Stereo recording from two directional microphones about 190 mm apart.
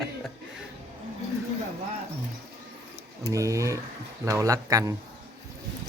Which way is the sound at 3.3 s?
15° right (ahead or behind).